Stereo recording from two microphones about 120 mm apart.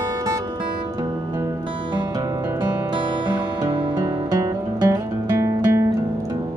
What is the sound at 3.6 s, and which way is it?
Music, 35° right (ahead or behind).